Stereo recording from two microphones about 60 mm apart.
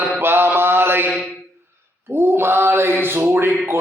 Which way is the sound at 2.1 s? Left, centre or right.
Right.